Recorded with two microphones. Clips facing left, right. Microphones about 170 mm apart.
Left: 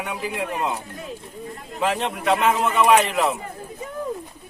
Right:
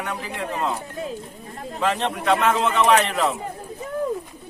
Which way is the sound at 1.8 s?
5° left (ahead or behind).